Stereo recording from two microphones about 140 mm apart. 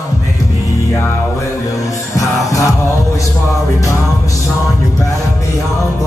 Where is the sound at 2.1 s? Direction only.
25° left (ahead or behind).